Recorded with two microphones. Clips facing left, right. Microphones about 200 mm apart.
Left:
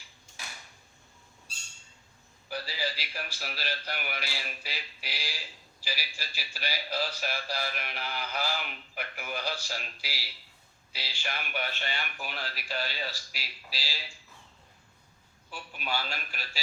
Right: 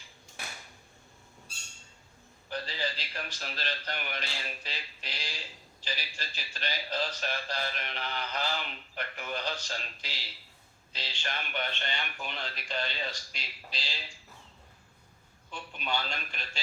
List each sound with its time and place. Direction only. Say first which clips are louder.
2.5 s a man's voice: even; 10° left (ahead or behind)
15.4 s a man's voice: even; 5° left (ahead or behind)